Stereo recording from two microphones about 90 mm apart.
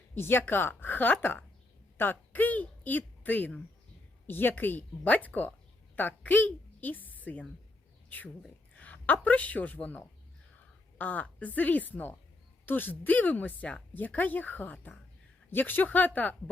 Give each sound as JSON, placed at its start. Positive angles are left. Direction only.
{"t": 0.1, "sound": "a woman's voice", "side_deg": 25}
{"t": 8.7, "sound": "a woman's voice", "side_deg": 20}